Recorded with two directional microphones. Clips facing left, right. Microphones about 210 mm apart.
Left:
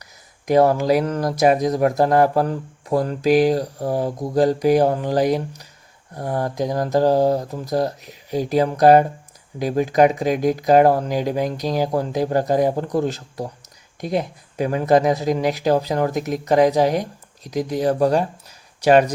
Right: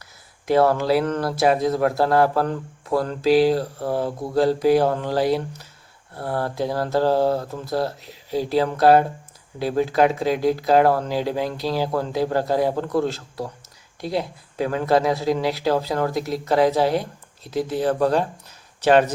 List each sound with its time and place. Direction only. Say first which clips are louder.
0.4 s speech: left 2 dB; 15° left (ahead or behind)